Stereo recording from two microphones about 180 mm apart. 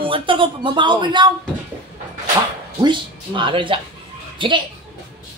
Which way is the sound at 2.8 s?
25° right (ahead or behind).